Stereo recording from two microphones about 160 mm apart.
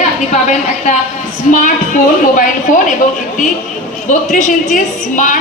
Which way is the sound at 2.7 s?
60° left (ahead or behind).